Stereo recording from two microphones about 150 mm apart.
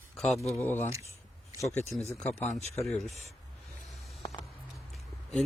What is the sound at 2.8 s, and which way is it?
Speech, centre (ahead or behind).